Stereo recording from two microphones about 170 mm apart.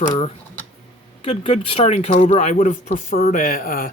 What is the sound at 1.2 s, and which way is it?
Speech, 35° left (ahead or behind).